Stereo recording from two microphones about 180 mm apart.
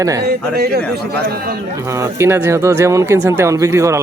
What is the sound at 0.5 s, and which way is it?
Speech, 65° right (ahead or behind).